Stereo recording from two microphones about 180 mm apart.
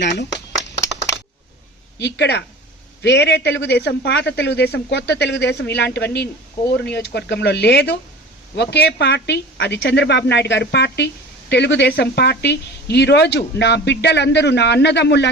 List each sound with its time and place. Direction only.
2.0 s a woman's voice: 70° left (ahead or behind)